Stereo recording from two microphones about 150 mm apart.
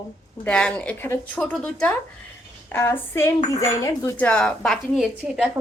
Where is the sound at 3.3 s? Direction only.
20° left (ahead or behind).